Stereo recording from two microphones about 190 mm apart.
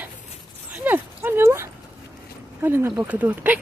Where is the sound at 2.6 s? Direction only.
10° right (ahead or behind).